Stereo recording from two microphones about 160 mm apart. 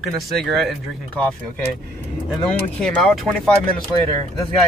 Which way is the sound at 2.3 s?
5° left (ahead or behind).